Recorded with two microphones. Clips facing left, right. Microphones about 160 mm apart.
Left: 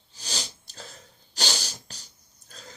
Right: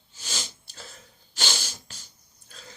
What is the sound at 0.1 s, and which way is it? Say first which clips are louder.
Sneeze: left 1 dB; 40° left (ahead or behind).